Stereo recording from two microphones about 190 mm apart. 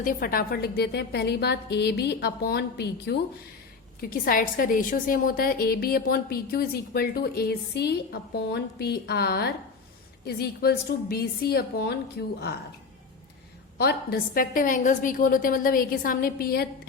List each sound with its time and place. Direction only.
0.0 s a woman's voice: 50° left (ahead or behind)
4.0 s a woman's voice: 50° left (ahead or behind)
13.7 s a woman's voice: 55° left (ahead or behind)